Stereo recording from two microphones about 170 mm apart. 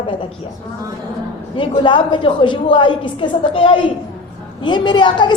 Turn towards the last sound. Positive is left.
turn(degrees=25)  # may be behind; listen again after turning